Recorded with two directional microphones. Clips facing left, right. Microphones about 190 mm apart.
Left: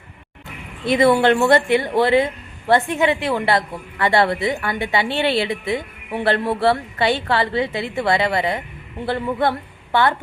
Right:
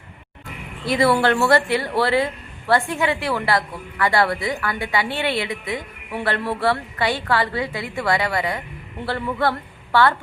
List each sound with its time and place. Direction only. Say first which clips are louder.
0.9 s speech: left 3 dB; 20° left (ahead or behind)